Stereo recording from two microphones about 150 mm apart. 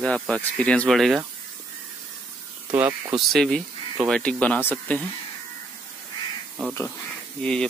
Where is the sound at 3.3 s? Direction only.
Centre (ahead or behind).